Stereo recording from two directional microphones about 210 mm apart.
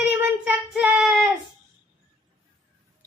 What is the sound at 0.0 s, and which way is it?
Child singing, 5° right (ahead or behind).